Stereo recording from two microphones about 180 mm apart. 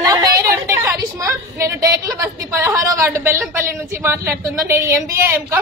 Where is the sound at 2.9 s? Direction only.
15° right (ahead or behind).